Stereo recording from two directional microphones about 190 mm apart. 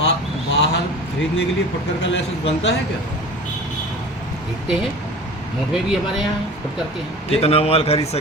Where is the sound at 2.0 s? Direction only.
75° left (ahead or behind).